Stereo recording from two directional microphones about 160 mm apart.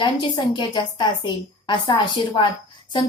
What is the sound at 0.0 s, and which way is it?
A woman's voice, 25° left (ahead or behind).